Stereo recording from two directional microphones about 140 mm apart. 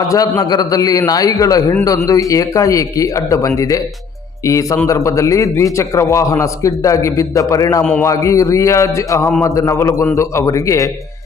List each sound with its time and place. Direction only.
0.1 s a man's voice: 25° left (ahead or behind)